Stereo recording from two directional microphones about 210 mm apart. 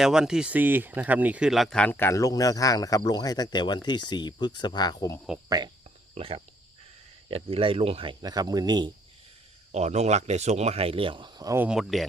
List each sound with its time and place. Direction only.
0.0 s speech: 5° right (ahead or behind); by 5.2 s 15° left (ahead or behind)
5.5 s speech: 20° right (ahead or behind)
9.7 s speech: 30° right (ahead or behind); by 12.0 s centre (ahead or behind)